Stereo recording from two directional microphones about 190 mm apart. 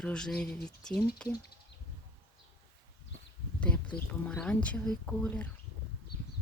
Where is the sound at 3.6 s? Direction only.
5° left (ahead or behind).